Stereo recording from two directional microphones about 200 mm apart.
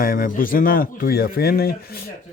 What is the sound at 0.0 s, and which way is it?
A man's voice, 45° left (ahead or behind).